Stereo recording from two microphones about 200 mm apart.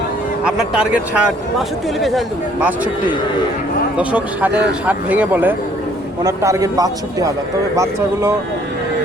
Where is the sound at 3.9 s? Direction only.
5° right (ahead or behind).